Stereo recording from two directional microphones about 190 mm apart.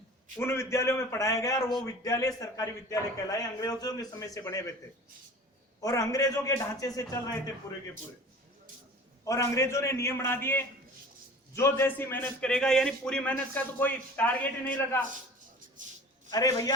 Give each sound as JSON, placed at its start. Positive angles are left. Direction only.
{"t": 0.3, "sound": "a man's voice", "side_deg": 15}
{"t": 5.8, "sound": "a man's voice", "side_deg": 15}
{"t": 9.2, "sound": "a man's voice", "side_deg": 15}
{"t": 16.3, "sound": "a man's voice", "side_deg": 20}